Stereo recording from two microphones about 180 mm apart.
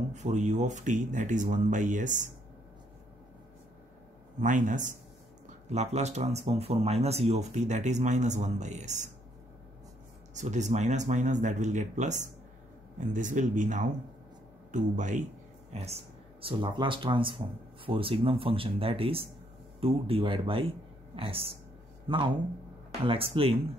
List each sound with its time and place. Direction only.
0.1 s speech: 40° right (ahead or behind)
4.4 s speech: 45° right (ahead or behind)
10.3 s speech: 40° right (ahead or behind)